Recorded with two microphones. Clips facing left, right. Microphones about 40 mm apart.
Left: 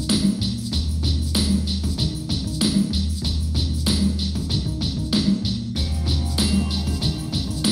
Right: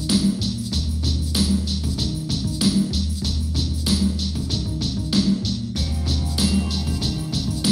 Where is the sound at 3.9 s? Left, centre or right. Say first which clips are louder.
Even; centre.